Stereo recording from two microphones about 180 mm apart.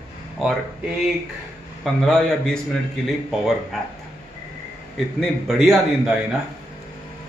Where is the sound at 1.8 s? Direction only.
5° left (ahead or behind).